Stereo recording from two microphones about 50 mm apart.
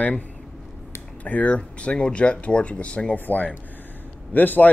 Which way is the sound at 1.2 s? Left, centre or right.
Left.